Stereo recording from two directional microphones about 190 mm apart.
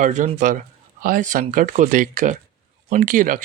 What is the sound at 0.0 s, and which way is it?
Speech, 40° right (ahead or behind).